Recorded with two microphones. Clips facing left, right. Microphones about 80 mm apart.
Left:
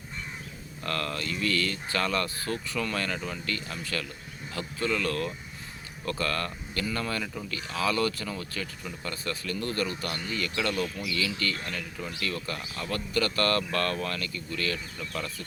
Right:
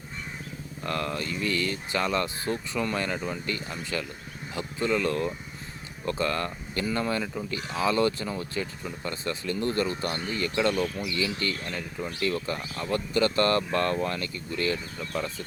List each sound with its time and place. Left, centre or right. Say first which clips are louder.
0.9 s speech: right 2 dB; centre